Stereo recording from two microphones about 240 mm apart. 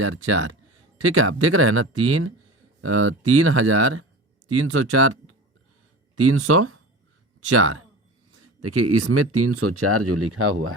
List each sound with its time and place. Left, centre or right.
0.0 s speech: right